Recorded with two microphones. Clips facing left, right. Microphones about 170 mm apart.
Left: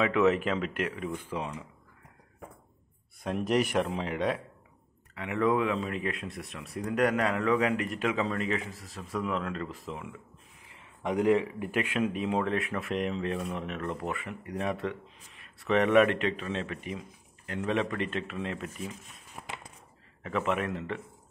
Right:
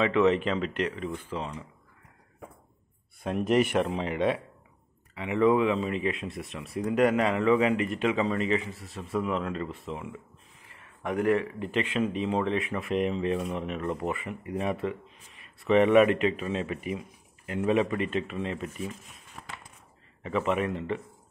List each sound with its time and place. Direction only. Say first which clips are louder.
0.0 s speech: right 2 dB; 5° left (ahead or behind)
3.3 s speech: right 3 dB; centre (ahead or behind)
11.0 s speech: even; 15° left (ahead or behind); by 18.9 s centre (ahead or behind)
19.3 s a sound: left 2 dB; 20° left (ahead or behind)
20.2 s speech: right 3 dB; centre (ahead or behind)